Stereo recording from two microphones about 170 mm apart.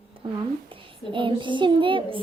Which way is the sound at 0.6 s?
30° right (ahead or behind).